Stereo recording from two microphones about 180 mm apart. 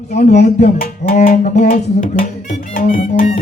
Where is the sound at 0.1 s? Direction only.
40° left (ahead or behind).